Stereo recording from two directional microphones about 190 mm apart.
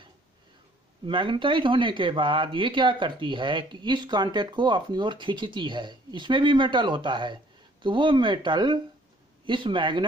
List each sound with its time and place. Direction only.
1.0 s speech: 25° right (ahead or behind)